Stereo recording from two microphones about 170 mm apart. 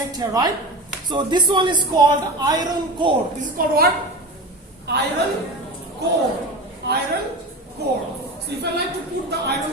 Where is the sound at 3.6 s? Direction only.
55° right (ahead or behind).